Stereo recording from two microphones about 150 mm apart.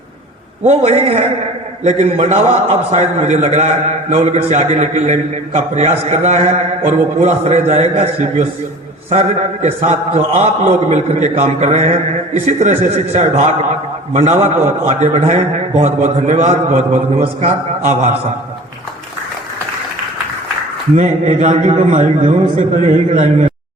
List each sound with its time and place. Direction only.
0.6 s a man's voice: 45° right (ahead or behind)
20.9 s a man's voice: 50° right (ahead or behind)